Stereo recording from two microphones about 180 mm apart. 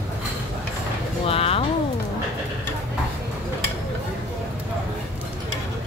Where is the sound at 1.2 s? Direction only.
30° left (ahead or behind).